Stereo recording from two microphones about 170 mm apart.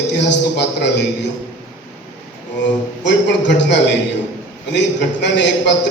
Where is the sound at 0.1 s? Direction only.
85° left.